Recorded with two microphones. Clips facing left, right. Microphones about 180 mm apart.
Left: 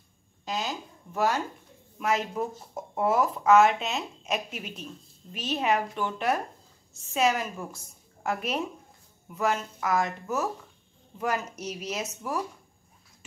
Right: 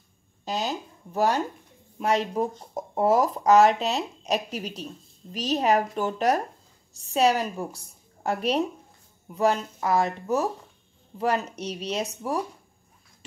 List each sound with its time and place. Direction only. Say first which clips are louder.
0.5 s a woman's voice: right 3 dB; 35° right (ahead or behind)